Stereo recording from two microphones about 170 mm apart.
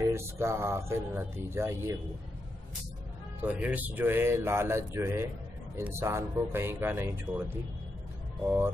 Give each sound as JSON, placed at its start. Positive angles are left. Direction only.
{"t": 0.0, "sound": "speech", "side_deg": -15}
{"t": 3.4, "sound": "speech", "side_deg": -10}